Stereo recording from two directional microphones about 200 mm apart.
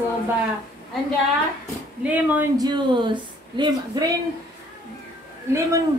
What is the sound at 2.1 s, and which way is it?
Speech, 10° right (ahead or behind).